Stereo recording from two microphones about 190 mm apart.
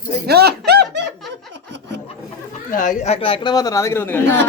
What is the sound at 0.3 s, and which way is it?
Music, 60° right (ahead or behind).